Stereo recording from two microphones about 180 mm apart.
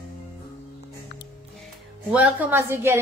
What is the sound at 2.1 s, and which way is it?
Speech, 5° right (ahead or behind).